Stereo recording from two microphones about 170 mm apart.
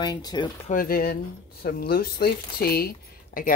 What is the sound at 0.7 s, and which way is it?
Speech, 55° left (ahead or behind).